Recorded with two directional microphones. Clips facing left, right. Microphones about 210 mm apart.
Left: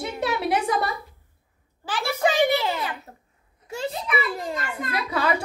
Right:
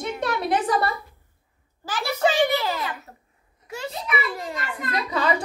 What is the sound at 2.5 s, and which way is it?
Speech, 25° left (ahead or behind).